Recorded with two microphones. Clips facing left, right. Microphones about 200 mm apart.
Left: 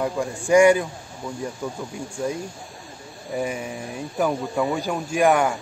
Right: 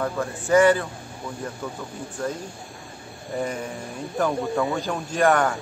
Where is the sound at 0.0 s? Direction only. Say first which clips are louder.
Left 2 dB; 15° left (ahead or behind).